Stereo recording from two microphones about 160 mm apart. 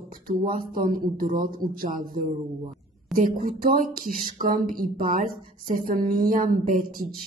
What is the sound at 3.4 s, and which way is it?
Speech, 60° right (ahead or behind).